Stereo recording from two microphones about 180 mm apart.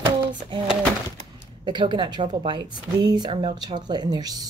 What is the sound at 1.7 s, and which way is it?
Speech, 25° right (ahead or behind).